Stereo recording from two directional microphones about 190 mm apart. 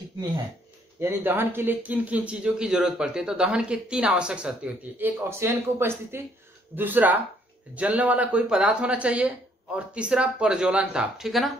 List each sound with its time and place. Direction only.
0.9 s speech: 10° right (ahead or behind)